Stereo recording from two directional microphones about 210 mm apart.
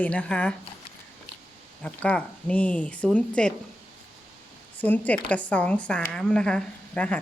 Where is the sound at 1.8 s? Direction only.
5° left (ahead or behind).